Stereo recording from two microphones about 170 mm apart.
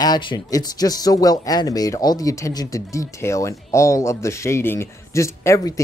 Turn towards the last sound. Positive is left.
turn(degrees=20)  # may be behind; listen again after turning